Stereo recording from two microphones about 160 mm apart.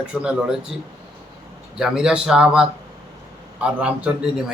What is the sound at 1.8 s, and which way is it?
A man's voice, 5° right (ahead or behind).